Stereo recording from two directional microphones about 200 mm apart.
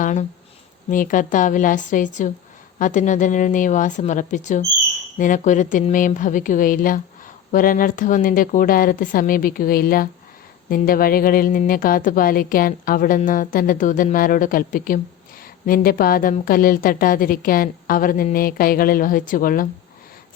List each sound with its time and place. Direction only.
0.0 s a woman's voice: 40° left (ahead or behind)